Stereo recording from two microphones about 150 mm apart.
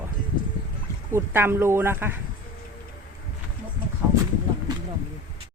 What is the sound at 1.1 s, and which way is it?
Speech, 15° right (ahead or behind).